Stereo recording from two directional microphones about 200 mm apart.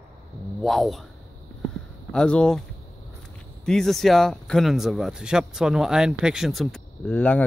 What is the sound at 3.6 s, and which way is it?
Speech, 5° left (ahead or behind).